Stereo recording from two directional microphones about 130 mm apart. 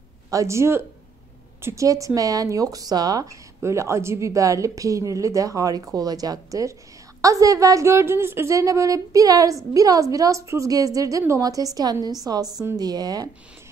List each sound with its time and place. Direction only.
0.3 s a woman's voice: 25° right (ahead or behind)